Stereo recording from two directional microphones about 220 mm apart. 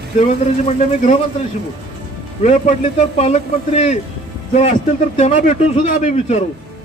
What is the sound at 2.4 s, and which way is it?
A man's voice, 30° left (ahead or behind).